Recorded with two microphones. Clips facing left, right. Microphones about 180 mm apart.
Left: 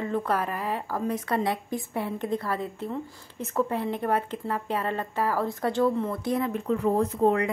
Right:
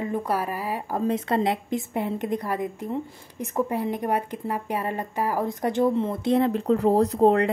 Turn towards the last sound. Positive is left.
turn(degrees=-30)  # may be behind; listen again after turning